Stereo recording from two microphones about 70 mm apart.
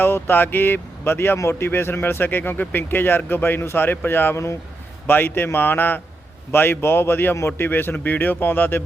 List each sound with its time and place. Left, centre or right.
0.0 s a man's voice: left